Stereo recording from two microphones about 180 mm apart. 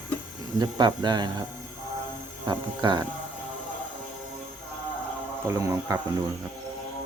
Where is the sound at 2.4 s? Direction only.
25° right (ahead or behind).